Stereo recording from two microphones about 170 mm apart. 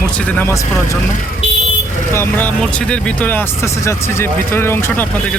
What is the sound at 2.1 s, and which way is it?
A man's voice, 10° left (ahead or behind).